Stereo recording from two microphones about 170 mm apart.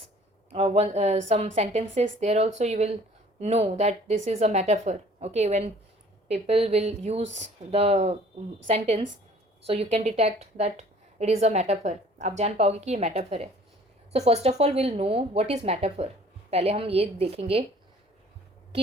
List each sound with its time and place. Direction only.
0.5 s a woman's voice: 40° right (ahead or behind)